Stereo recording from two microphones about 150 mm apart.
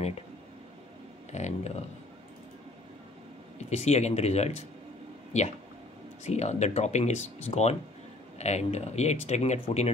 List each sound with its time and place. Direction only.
1.3 s speech: 50° left (ahead or behind)
3.5 s speech: 50° left (ahead or behind)